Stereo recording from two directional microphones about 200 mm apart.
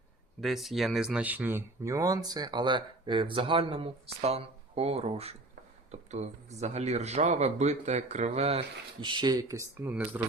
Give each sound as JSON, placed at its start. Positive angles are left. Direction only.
{"t": 0.4, "sound": "speech", "side_deg": 0}